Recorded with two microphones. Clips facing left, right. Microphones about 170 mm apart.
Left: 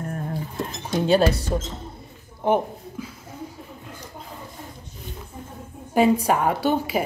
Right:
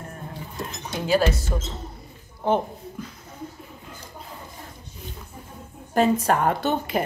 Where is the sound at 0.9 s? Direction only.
30° left (ahead or behind).